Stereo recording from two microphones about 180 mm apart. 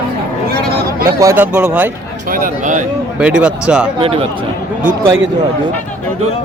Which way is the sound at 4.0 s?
30° right (ahead or behind).